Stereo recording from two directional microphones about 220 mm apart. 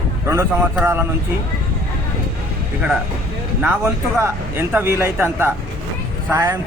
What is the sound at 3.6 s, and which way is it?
Speech, 10° right (ahead or behind).